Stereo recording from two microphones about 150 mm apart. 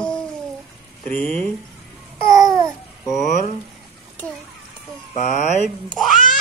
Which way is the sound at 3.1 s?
55° left (ahead or behind).